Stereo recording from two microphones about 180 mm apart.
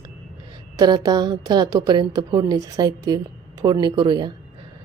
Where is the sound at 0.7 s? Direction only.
20° right (ahead or behind).